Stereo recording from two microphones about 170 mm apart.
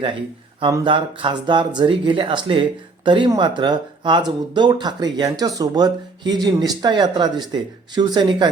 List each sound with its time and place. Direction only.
0.6 s speech: 30° right (ahead or behind)